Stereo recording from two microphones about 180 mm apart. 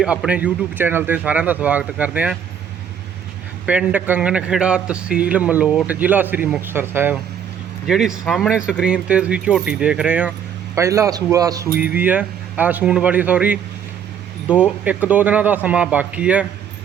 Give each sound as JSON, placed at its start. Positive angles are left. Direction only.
{"t": 0.0, "sound": "speech", "side_deg": -5}
{"t": 3.7, "sound": "speech", "side_deg": -10}